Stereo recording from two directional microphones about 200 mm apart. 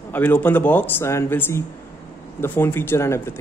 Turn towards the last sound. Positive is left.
turn(degrees=10)  # may be behind; listen again after turning